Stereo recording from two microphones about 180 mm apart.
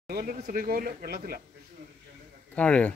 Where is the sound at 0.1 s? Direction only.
50° right (ahead or behind).